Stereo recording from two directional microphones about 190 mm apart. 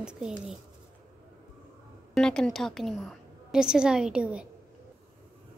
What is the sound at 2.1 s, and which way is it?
A woman's voice, 5° left (ahead or behind).